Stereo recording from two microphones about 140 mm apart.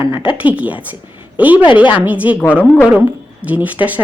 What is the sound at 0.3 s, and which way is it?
Speech, 10° right (ahead or behind).